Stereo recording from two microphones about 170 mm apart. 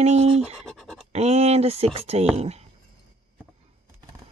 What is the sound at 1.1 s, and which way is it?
Speech, 40° right (ahead or behind).